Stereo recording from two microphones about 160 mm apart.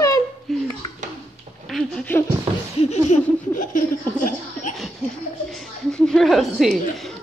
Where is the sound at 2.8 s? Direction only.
45° left (ahead or behind).